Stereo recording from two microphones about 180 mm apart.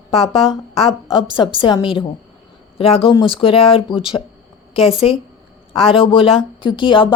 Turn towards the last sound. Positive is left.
turn(degrees=25)  # may be behind; listen again after turning